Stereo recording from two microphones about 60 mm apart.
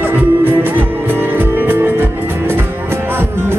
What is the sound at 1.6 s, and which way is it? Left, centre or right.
Music, right.